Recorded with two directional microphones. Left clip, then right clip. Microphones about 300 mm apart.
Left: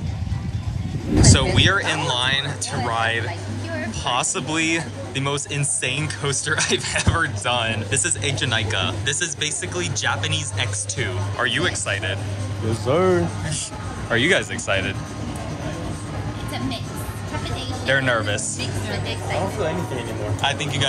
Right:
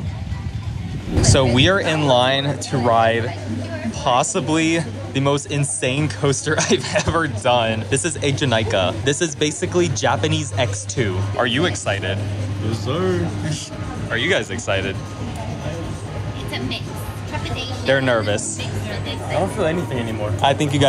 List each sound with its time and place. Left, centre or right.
1.3 s speech: centre
12.8 s speech: left
14.1 s speech: centre
17.8 s speech: centre
20.3 s speech: centre